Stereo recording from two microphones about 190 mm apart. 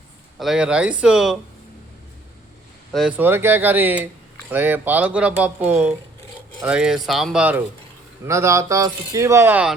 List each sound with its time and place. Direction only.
0.3 s speech: centre (ahead or behind)
2.9 s speech: 5° right (ahead or behind)